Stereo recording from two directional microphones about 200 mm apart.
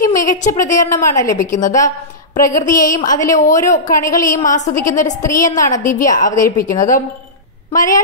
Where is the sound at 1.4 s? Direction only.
40° left (ahead or behind).